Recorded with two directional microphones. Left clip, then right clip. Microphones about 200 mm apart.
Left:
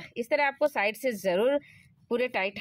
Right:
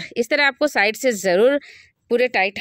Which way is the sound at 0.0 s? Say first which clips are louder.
Right 9 dB; 45° right (ahead or behind).